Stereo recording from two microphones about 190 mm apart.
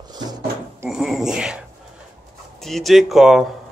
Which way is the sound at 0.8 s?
Centre (ahead or behind).